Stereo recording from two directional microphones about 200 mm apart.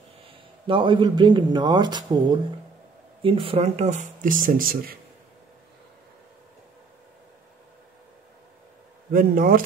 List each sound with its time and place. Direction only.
0.7 s speech: 25° right (ahead or behind); by 4.9 s 45° right (ahead or behind)
9.1 s speech: 45° right (ahead or behind)